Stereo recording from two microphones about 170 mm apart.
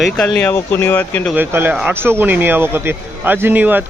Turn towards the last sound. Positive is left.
turn(degrees=-10)  # may be behind; listen again after turning